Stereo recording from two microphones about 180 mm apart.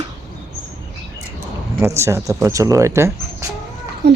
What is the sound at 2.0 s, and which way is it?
Speech, 15° right (ahead or behind).